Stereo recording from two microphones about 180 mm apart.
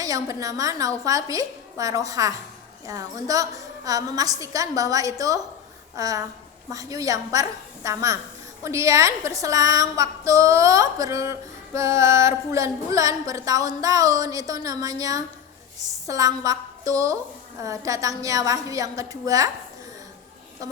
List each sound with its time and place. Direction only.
0.0 s a woman's voice: 20° right (ahead or behind)